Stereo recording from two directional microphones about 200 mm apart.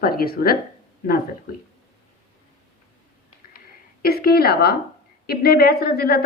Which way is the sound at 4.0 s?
50° left (ahead or behind).